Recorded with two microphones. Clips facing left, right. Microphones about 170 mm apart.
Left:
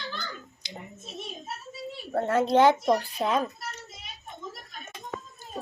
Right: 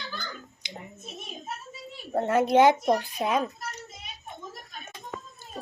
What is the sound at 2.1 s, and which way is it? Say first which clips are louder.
Speech: right 1 dB; 15° right (ahead or behind).